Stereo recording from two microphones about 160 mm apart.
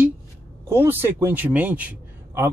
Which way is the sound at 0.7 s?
15° right (ahead or behind).